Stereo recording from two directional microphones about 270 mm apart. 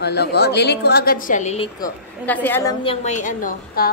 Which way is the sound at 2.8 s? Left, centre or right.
Left.